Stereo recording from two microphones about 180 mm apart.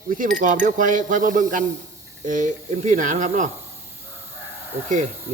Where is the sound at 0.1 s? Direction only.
50° right (ahead or behind).